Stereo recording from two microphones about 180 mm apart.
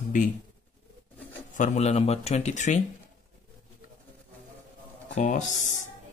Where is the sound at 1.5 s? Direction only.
45° left (ahead or behind).